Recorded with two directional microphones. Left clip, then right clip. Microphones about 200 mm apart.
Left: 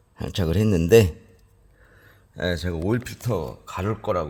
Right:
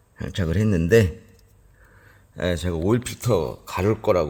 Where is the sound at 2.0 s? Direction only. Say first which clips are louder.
Right 1 dB; 10° left (ahead or behind).